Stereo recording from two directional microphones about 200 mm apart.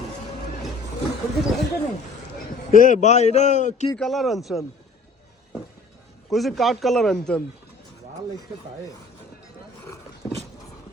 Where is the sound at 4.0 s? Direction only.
Centre (ahead or behind).